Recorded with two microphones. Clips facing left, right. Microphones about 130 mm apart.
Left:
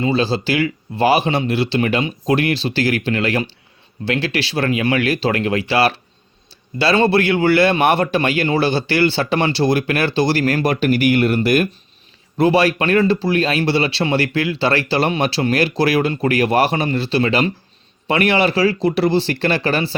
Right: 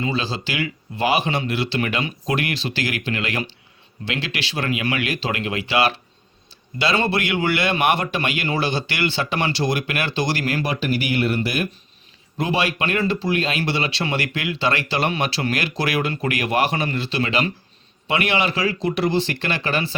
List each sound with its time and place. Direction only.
0.0 s speech: 35° left (ahead or behind)
12.4 s speech: 40° left (ahead or behind)